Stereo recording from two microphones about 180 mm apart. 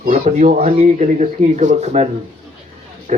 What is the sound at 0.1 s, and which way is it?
Speech, 35° right (ahead or behind).